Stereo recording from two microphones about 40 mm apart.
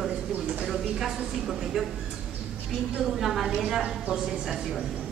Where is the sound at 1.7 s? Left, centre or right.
Centre.